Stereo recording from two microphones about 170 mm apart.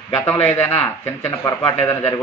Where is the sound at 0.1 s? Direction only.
15° left (ahead or behind).